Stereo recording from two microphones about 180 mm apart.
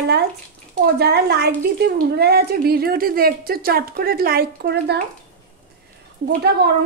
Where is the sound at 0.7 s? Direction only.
60° right (ahead or behind).